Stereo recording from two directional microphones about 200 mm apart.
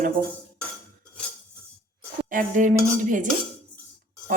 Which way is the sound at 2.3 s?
40° right (ahead or behind).